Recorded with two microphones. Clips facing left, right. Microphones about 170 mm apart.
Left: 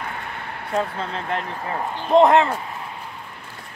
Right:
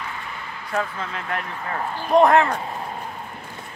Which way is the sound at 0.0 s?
60° left (ahead or behind).